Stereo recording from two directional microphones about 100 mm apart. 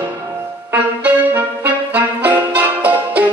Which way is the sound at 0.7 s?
20° right (ahead or behind).